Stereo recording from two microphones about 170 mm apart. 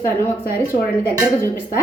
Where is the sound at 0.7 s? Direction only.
20° right (ahead or behind).